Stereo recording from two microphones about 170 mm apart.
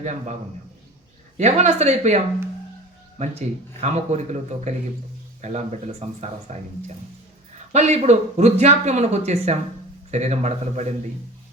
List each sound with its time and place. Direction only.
1.4 s speech: 40° right (ahead or behind)